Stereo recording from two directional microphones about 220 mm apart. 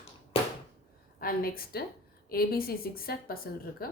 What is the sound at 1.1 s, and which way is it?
Speech, 40° left (ahead or behind).